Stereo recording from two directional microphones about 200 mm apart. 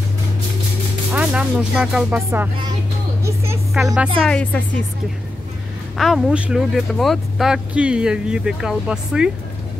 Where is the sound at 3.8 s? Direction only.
5° right (ahead or behind).